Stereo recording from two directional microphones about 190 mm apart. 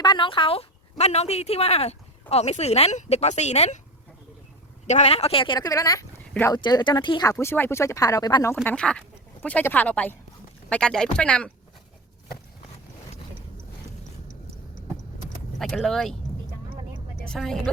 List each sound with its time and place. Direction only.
0.0 s a woman's voice: 25° left (ahead or behind)
4.9 s speech: 35° left (ahead or behind); by 8.5 s 20° left (ahead or behind)
8.6 s speech: 5° left (ahead or behind)
15.5 s speech: centre (ahead or behind)
17.2 s speech: centre (ahead or behind)